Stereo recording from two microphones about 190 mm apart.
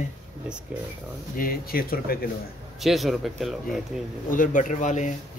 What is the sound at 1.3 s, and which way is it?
Speech, 50° left (ahead or behind).